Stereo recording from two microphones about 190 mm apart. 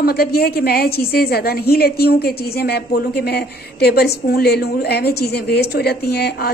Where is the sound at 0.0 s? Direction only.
55° left (ahead or behind).